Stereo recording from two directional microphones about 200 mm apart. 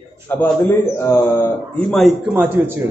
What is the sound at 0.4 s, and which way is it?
A man's voice, 10° left (ahead or behind).